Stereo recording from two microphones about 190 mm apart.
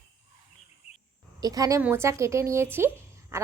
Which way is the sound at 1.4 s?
20° right (ahead or behind).